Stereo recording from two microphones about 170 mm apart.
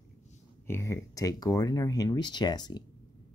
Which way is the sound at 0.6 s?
15° left (ahead or behind).